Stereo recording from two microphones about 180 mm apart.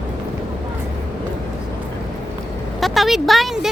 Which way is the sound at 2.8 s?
Centre (ahead or behind).